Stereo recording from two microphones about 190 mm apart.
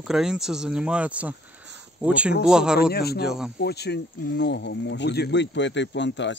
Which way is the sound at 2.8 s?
55° left (ahead or behind).